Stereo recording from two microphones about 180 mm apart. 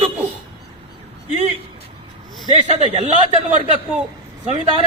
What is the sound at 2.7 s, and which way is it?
A man's voice, 35° right (ahead or behind).